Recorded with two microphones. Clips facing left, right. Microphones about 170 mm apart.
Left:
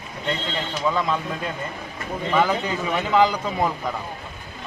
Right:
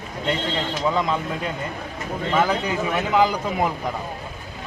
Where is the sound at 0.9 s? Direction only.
20° right (ahead or behind).